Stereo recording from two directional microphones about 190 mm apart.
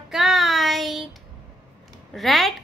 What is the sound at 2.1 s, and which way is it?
Speech, centre (ahead or behind).